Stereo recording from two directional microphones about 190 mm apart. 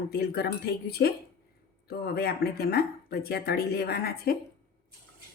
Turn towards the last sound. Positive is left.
turn(degrees=55)  # may be behind; listen again after turning